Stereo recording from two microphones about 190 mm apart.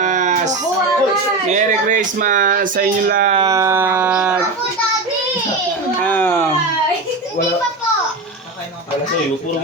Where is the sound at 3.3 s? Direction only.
20° right (ahead or behind).